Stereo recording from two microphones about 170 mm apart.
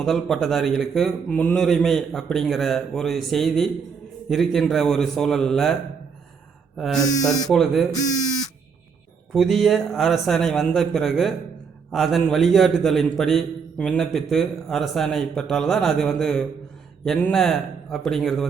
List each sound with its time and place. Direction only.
0.0 s a man's voice: centre (ahead or behind)
6.7 s speech: centre (ahead or behind)
7.0 s speech: 20° left (ahead or behind)
7.5 s a man's voice: centre (ahead or behind)
9.3 s a man's voice: centre (ahead or behind)